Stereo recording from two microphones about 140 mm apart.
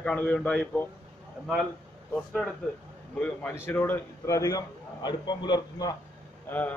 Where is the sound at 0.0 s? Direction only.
10° left (ahead or behind).